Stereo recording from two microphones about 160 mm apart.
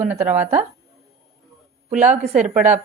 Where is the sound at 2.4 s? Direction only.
10° right (ahead or behind).